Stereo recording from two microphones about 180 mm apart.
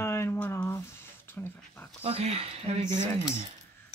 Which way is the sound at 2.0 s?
35° right (ahead or behind).